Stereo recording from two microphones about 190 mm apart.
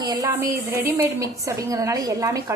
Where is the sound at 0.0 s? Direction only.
20° right (ahead or behind).